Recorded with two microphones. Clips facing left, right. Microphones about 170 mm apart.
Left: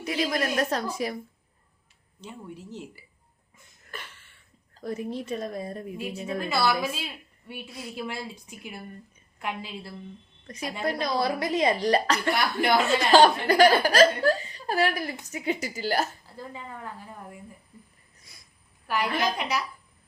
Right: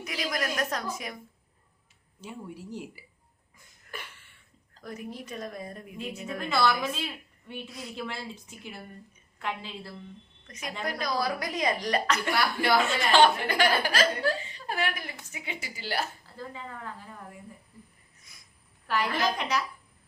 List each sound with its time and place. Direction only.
0.0 s speech: 30° left (ahead or behind)
2.2 s speech: 10° right (ahead or behind)
3.9 s a sound: 10° right (ahead or behind)
4.8 s speech: 30° left (ahead or behind)
6.5 s a woman's voice: 10° left (ahead or behind)
10.4 s a woman's voice: 35° left (ahead or behind)
18.9 s a woman's voice: 10° left (ahead or behind)